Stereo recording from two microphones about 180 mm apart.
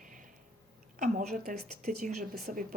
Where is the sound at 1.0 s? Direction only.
50° right (ahead or behind).